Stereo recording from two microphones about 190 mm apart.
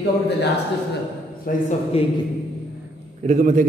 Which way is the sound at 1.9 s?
30° left (ahead or behind).